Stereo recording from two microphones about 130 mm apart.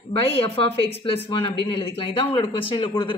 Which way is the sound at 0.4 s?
45° left (ahead or behind).